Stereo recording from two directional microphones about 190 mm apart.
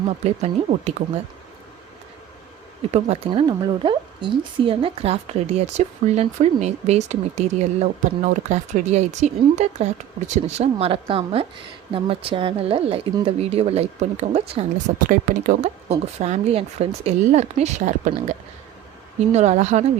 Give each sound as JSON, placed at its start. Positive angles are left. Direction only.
{"t": 0.3, "sound": "a woman's voice", "side_deg": -35}
{"t": 2.9, "sound": "a woman's voice", "side_deg": -30}
{"t": 14.9, "sound": "a woman's voice", "side_deg": -45}